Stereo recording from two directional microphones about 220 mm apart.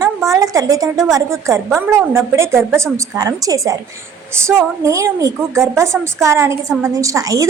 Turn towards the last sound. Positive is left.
turn(degrees=-15)  # may be behind; listen again after turning